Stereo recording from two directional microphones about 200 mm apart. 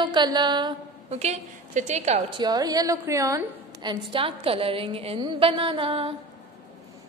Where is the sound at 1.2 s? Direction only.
35° right (ahead or behind).